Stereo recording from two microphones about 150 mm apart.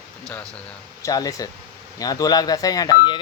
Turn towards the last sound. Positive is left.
turn(degrees=30)  # may be behind; listen again after turning